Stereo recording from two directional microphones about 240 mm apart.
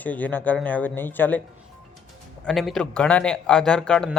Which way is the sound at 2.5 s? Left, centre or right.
Centre.